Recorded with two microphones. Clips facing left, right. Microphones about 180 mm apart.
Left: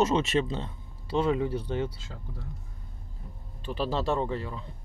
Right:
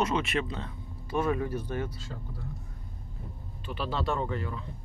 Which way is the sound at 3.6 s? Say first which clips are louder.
Left 3 dB; 30° left (ahead or behind).